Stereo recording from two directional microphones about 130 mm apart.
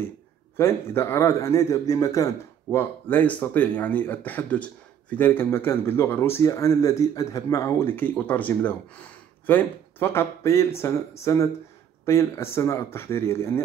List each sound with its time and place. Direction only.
0.6 s a man's voice: 20° left (ahead or behind)
2.7 s a man's voice: 15° left (ahead or behind)